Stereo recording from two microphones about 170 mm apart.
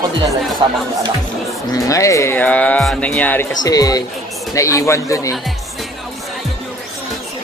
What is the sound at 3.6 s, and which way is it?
Speech, 20° left (ahead or behind).